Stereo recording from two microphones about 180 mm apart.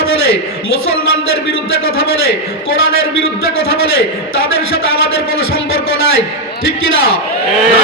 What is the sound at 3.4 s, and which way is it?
A man's voice, 60° right (ahead or behind).